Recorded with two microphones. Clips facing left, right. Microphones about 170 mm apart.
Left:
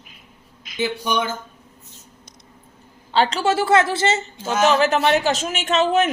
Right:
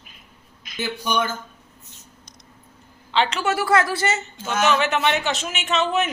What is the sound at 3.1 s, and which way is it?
A man's voice, 35° left (ahead or behind).